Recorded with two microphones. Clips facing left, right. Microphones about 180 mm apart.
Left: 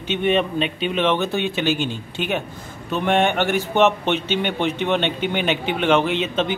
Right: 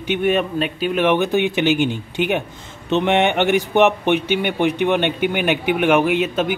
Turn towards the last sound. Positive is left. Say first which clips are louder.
# right 3 dB
turn(degrees=-10)  # may be behind; listen again after turning